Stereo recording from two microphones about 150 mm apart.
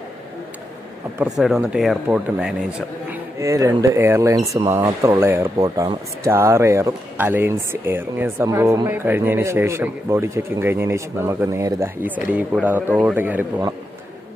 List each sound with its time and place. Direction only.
1.4 s speech: 5° right (ahead or behind)
3.1 s speech: 20° right (ahead or behind)